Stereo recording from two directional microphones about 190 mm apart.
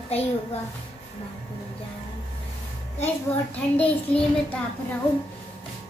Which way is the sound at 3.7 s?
5° left (ahead or behind).